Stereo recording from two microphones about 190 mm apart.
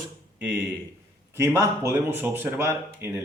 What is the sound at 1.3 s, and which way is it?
Speech, 15° right (ahead or behind).